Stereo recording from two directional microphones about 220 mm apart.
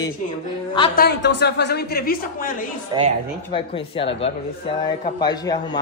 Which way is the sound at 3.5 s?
25° left (ahead or behind).